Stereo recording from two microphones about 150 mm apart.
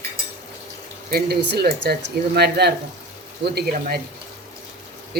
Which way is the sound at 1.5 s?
90° right.